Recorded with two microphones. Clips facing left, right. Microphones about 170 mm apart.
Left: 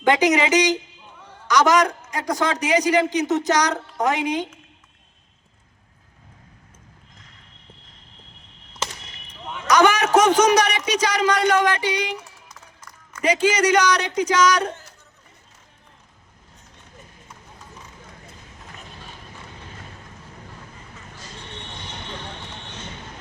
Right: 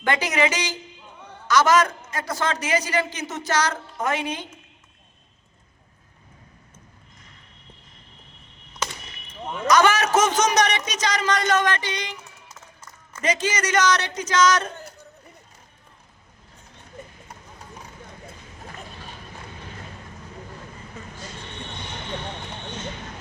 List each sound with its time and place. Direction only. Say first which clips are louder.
0.0 s a man's voice: left 5 dB; 15° left (ahead or behind)
9.6 s a man's voice: left 1 dB; 15° left (ahead or behind)
13.2 s a man's voice: left 6 dB; 10° left (ahead or behind)